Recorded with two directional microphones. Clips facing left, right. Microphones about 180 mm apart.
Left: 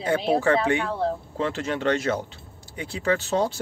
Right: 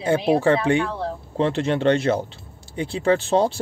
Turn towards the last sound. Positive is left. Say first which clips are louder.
# right 5 dB
turn(degrees=-30)  # may be behind; listen again after turning